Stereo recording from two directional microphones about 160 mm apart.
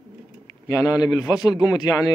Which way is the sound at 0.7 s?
20° left (ahead or behind).